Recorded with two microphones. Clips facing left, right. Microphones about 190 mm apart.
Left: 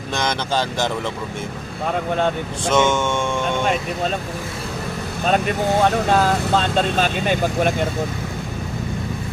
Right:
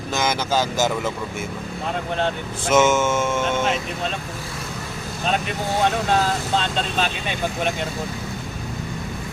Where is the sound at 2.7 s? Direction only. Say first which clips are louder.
Right 1 dB; 5° right (ahead or behind).